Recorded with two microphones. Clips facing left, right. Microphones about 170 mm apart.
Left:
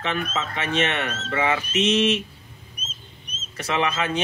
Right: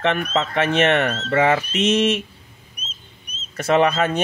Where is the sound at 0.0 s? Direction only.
60° right (ahead or behind).